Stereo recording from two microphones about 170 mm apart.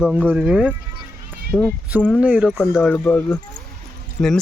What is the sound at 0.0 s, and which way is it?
Speech, centre (ahead or behind).